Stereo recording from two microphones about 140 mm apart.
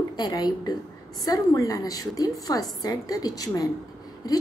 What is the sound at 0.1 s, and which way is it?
A woman's voice, 30° left (ahead or behind).